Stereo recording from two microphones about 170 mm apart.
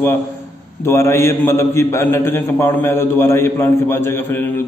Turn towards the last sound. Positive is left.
turn(degrees=15)  # may be behind; listen again after turning